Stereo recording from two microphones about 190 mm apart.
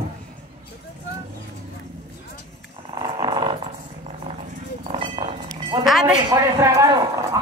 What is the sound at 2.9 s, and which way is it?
Roaring cats, 20° right (ahead or behind).